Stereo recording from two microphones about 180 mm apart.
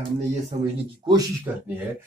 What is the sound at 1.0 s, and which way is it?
Speech, 25° right (ahead or behind).